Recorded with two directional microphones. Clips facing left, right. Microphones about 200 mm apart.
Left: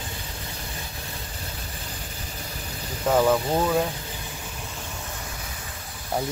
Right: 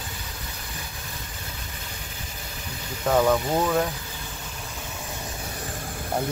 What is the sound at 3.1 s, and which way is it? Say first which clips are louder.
Speech: even; 5° left (ahead or behind).